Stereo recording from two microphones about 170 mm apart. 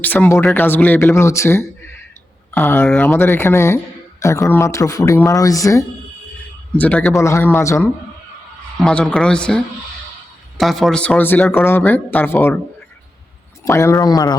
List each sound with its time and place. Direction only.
0.0 s speech: 10° left (ahead or behind)
6.7 s speech: 10° left (ahead or behind)
13.7 s speech: 15° left (ahead or behind)